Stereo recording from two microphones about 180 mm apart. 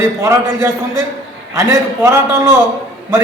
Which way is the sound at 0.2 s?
15° right (ahead or behind).